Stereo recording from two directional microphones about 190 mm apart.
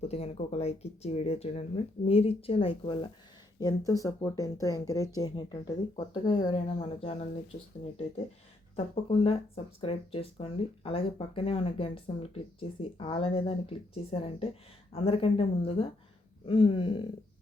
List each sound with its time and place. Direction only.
0.0 s a woman's voice: 35° left (ahead or behind)
8.7 s a woman's voice: 30° left (ahead or behind)